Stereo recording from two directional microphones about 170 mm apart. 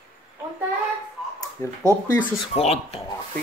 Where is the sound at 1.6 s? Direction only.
15° left (ahead or behind).